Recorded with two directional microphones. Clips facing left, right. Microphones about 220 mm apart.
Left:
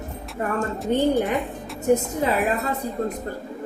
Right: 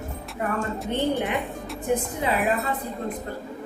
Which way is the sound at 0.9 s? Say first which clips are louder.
Left 5 dB; 40° left (ahead or behind).